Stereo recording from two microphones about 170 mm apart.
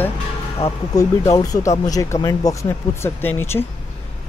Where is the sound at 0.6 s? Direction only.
35° left (ahead or behind).